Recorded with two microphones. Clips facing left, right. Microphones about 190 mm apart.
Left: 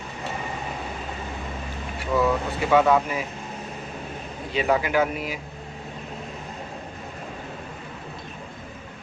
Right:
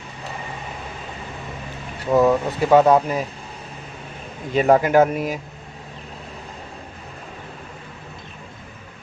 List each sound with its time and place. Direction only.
2.1 s speech: 40° right (ahead or behind)
4.5 s speech: 45° right (ahead or behind)